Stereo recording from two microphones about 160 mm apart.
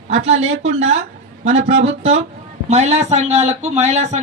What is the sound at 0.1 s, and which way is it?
Speech, 45° right (ahead or behind).